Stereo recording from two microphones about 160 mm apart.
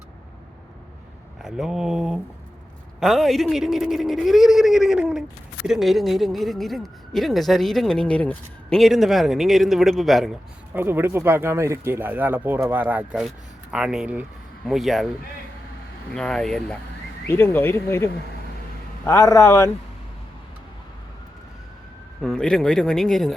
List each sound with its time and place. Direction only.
1.4 s speech: 5° right (ahead or behind)
10.8 s speech: 15° right (ahead or behind)
16.1 s speech: 5° left (ahead or behind)
17.2 s a man's voice: 15° left (ahead or behind)
22.2 s speech: 5° left (ahead or behind)